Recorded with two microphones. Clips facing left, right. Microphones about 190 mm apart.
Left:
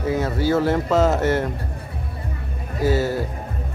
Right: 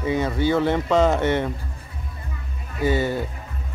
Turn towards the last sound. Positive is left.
turn(degrees=5)  # may be behind; listen again after turning